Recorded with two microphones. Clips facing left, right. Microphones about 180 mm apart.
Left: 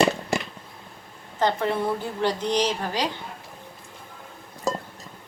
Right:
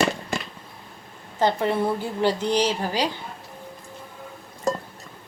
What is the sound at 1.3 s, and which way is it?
Speech, 10° right (ahead or behind).